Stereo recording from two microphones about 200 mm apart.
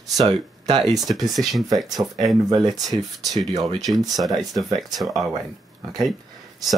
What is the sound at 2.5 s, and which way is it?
Speech, 20° right (ahead or behind).